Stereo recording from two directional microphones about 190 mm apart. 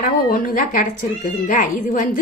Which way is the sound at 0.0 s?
45° left (ahead or behind).